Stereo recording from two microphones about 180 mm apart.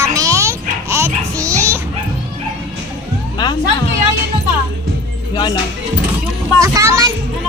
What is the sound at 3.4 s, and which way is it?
Speech, 25° left (ahead or behind).